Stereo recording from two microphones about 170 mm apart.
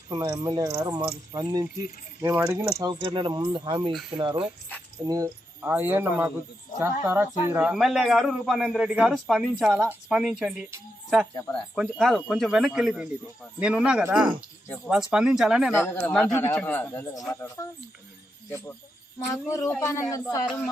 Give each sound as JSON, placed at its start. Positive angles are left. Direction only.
{"t": 0.1, "sound": "speech", "side_deg": -20}
{"t": 7.7, "sound": "a man's voice", "side_deg": 0}
{"t": 15.7, "sound": "speech", "side_deg": 15}